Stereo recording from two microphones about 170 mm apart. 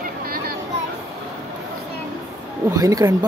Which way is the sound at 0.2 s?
60° right (ahead or behind).